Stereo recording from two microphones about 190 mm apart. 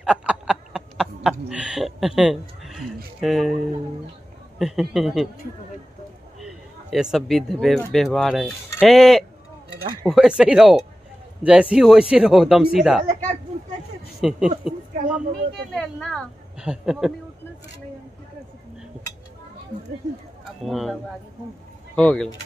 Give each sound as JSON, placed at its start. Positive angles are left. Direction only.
{"t": 0.0, "sound": "a sound", "side_deg": -5}
{"t": 1.5, "sound": "a woman's voice", "side_deg": -5}
{"t": 4.6, "sound": "a woman's voice", "side_deg": 0}
{"t": 6.4, "sound": "a woman's voice", "side_deg": 0}
{"t": 13.0, "sound": "speech", "side_deg": -40}
{"t": 14.2, "sound": "a woman's voice", "side_deg": 0}
{"t": 20.6, "sound": "a woman's voice", "side_deg": 0}